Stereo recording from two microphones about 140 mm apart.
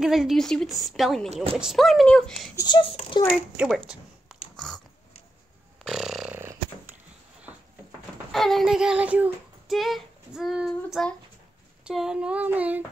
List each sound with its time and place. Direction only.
0.0 s speech: 5° right (ahead or behind)
1.3 s speech: 45° right (ahead or behind)
1.6 s speech: centre (ahead or behind)
2.5 s speech: 30° left (ahead or behind)
3.5 s speech: 5° right (ahead or behind)
4.3 s biting: 5° left (ahead or behind)
5.9 s snoring: 5° right (ahead or behind)
8.3 s child singing: centre (ahead or behind)
11.9 s a sound: 5° right (ahead or behind)